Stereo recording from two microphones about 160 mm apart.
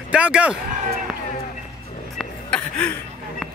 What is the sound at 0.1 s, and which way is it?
Speech, 5° right (ahead or behind).